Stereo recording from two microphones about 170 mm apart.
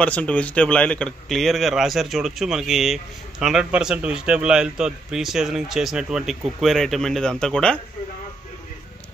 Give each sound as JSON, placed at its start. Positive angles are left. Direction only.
{"t": 0.0, "sound": "speech", "side_deg": 10}